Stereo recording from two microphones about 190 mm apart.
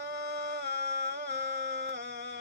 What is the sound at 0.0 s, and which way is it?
Music, 60° right (ahead or behind).